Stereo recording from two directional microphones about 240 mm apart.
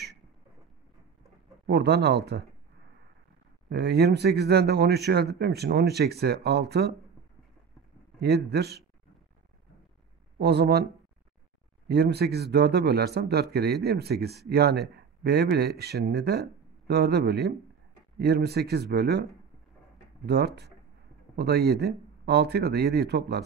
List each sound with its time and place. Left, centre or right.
1.7 s speech: right
3.6 s speech: right
8.2 s speech: right
10.4 s speech: right
11.9 s speech: right
20.2 s speech: right